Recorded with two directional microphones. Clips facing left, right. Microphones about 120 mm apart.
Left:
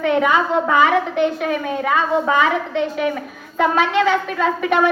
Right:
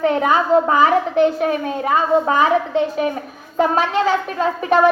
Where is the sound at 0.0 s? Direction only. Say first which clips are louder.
Even; 35° right (ahead or behind).